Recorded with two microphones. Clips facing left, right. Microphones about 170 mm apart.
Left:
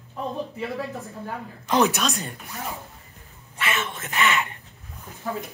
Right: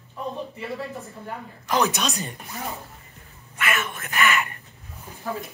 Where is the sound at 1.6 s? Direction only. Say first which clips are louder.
Left 2 dB; 20° left (ahead or behind).